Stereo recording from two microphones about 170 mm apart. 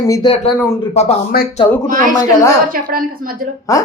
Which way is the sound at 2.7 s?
55° right (ahead or behind).